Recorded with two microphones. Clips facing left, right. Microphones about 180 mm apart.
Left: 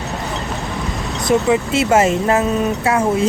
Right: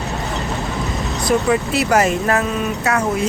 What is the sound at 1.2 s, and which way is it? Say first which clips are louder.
Speech: left 2 dB; 20° left (ahead or behind).